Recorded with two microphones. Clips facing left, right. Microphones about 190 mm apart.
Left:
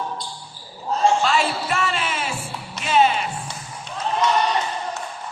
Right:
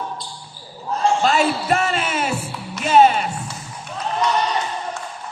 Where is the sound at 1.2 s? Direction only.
40° right (ahead or behind).